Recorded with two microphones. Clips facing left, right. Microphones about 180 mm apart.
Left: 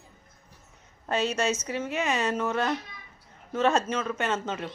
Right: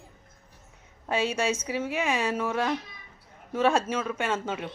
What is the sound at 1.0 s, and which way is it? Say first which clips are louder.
Speech: even; 10° right (ahead or behind).